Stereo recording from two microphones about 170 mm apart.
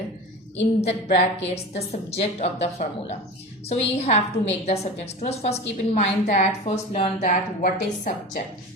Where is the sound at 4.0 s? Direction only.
40° left (ahead or behind).